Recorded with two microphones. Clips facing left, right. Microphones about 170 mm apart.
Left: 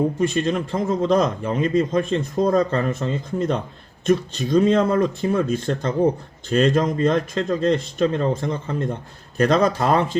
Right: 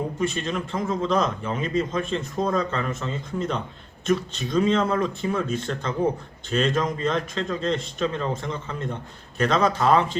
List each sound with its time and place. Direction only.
0.2 s a man's voice: 40° left (ahead or behind)